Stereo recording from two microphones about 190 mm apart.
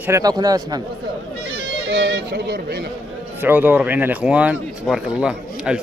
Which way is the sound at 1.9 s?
60° right (ahead or behind).